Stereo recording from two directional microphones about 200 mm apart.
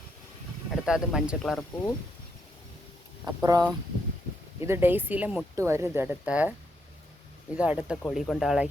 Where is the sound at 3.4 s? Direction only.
20° right (ahead or behind).